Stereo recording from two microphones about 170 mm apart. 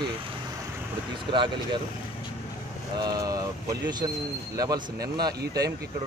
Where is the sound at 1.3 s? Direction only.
25° right (ahead or behind).